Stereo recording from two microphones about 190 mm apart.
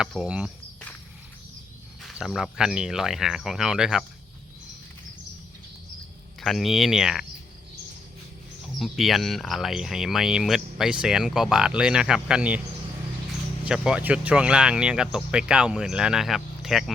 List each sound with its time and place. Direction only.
0.0 s speech: 5° right (ahead or behind)
2.0 s speech: centre (ahead or behind)
6.4 s speech: centre (ahead or behind)
8.8 s speech: centre (ahead or behind)
13.7 s speech: 5° right (ahead or behind)